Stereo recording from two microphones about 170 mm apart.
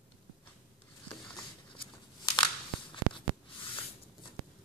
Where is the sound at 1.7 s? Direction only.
30° left (ahead or behind).